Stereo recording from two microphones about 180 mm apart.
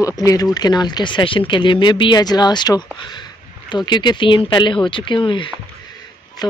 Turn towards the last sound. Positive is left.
turn(degrees=25)  # may be behind; listen again after turning